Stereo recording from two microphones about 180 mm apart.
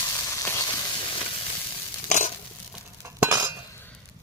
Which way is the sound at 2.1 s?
40° left (ahead or behind).